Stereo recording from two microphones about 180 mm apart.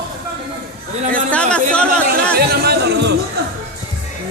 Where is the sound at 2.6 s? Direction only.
70° right (ahead or behind).